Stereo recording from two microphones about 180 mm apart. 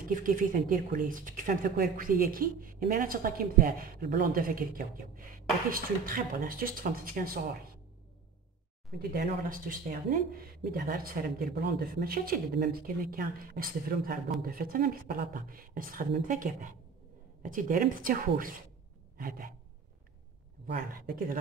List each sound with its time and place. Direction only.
0.1 s speech: 50° right (ahead or behind)
9.1 s speech: 50° right (ahead or behind)
19.1 s gasp: 55° right (ahead or behind)
20.6 s speech: 50° right (ahead or behind)